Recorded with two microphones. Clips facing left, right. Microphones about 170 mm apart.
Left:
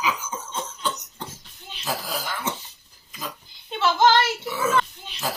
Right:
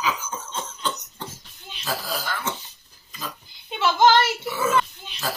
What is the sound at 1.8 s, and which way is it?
Speech, 15° left (ahead or behind).